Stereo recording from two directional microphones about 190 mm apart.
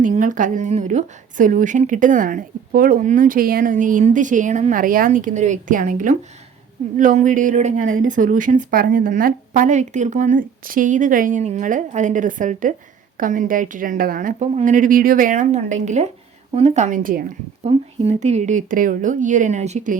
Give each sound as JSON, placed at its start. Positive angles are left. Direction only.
{"t": 0.0, "sound": "a woman's voice", "side_deg": -45}
{"t": 17.7, "sound": "a woman's voice", "side_deg": -30}